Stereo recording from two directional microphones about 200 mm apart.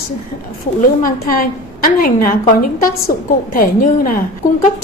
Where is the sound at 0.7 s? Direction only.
45° left (ahead or behind).